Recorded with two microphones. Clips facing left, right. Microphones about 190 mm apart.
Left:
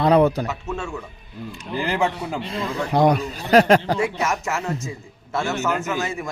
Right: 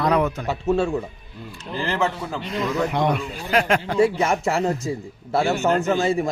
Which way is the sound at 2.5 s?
30° left (ahead or behind).